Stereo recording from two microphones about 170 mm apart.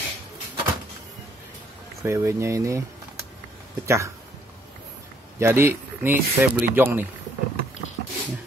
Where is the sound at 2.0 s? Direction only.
15° right (ahead or behind).